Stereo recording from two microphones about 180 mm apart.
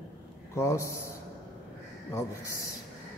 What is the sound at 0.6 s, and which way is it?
Speech, 15° left (ahead or behind).